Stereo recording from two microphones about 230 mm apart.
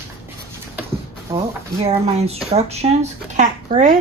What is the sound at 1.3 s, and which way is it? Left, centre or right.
Speech, right.